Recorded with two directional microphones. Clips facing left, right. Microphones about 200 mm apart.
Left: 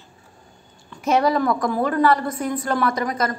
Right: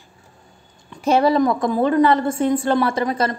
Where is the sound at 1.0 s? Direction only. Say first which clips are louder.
Right 3 dB; 30° right (ahead or behind).